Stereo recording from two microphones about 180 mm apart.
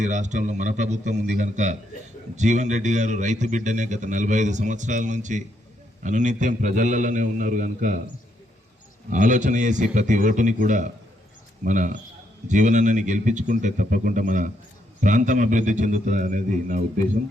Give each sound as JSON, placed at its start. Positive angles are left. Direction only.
{"t": 0.0, "sound": "a man's voice", "side_deg": -40}
{"t": 9.0, "sound": "a man's voice", "side_deg": -45}